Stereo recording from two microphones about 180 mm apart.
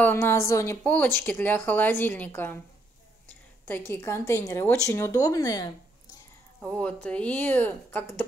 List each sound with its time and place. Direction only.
0.0 s a woman's voice: 15° left (ahead or behind)
6.6 s speech: 5° left (ahead or behind)